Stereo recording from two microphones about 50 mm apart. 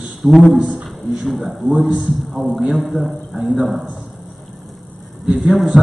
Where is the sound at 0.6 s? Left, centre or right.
Right.